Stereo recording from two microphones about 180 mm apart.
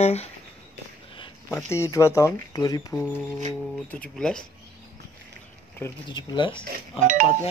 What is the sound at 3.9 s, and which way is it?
Speech, 5° left (ahead or behind).